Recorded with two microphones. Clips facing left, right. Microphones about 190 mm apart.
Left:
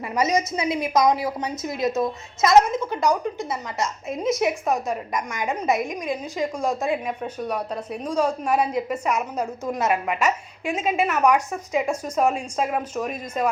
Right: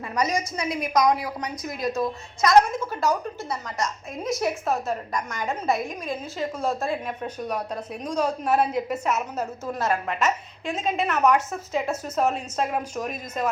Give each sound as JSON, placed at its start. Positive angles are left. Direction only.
{"t": 0.1, "sound": "a woman's voice", "side_deg": 20}
{"t": 8.4, "sound": "a woman's voice", "side_deg": -5}
{"t": 9.4, "sound": "a woman's voice", "side_deg": 15}
{"t": 11.2, "sound": "a woman's voice", "side_deg": -5}
{"t": 11.7, "sound": "a woman's voice", "side_deg": 10}